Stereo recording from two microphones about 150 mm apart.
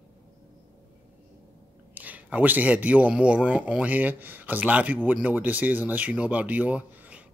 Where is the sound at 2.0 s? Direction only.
10° right (ahead or behind).